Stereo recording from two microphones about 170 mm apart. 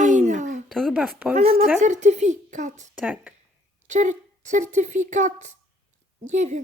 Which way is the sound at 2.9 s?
10° right (ahead or behind).